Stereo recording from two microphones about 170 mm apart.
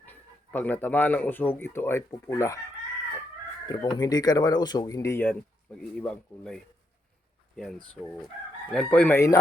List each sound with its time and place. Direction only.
0.0 s speech: 10° left (ahead or behind)
3.7 s speech: 25° left (ahead or behind); by 7.8 s centre (ahead or behind)
8.7 s chicken: 5° left (ahead or behind)